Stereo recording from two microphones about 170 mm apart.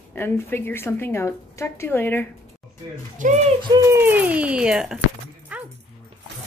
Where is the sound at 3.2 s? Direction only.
50° right (ahead or behind).